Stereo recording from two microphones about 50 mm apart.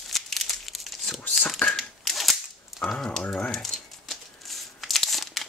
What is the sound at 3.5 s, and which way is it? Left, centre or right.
Crumpling, centre.